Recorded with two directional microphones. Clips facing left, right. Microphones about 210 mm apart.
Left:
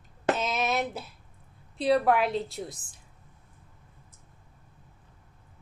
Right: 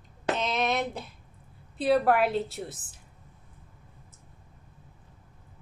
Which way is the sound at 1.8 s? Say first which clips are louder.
Even; centre (ahead or behind).